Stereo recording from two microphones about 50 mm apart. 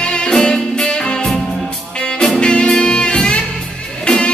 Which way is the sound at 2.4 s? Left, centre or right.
Centre.